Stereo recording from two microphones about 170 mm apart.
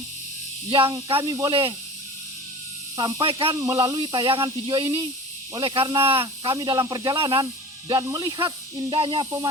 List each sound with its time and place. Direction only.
0.7 s speech: 30° right (ahead or behind)
2.9 s speech: 25° right (ahead or behind)